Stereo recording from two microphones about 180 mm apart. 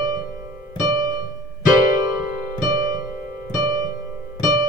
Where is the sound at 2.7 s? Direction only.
20° right (ahead or behind).